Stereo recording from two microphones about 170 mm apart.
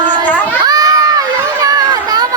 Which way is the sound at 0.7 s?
20° right (ahead or behind).